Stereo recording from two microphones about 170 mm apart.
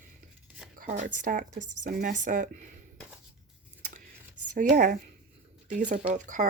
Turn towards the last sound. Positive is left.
turn(degrees=-50)  # may be behind; listen again after turning